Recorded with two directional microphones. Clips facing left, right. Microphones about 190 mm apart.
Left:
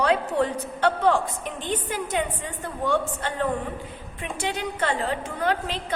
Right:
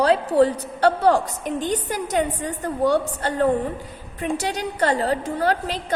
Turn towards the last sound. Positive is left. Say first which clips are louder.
# right 3 dB
turn(degrees=-40)  # may be behind; listen again after turning